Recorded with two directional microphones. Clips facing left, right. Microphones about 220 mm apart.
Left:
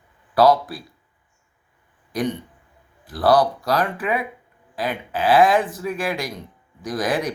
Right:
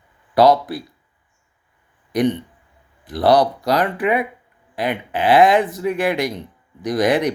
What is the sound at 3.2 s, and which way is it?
Speech, 20° right (ahead or behind).